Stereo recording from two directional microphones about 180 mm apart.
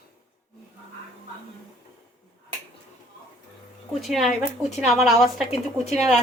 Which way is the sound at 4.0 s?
Centre (ahead or behind).